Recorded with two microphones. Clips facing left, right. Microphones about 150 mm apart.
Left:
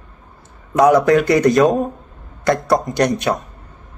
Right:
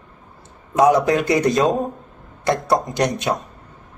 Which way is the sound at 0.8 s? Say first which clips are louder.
Left 3 dB; 20° right (ahead or behind).